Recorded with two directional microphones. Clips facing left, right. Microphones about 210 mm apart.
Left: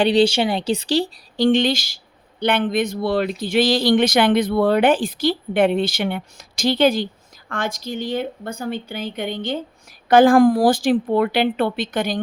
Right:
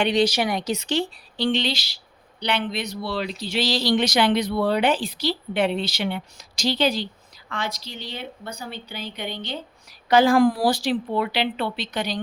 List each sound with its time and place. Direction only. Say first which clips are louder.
0.0 s speech: left 5 dB; 30° left (ahead or behind); by 12.2 s 50° left (ahead or behind)